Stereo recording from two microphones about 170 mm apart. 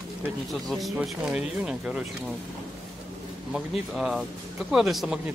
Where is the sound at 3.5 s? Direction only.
5° right (ahead or behind).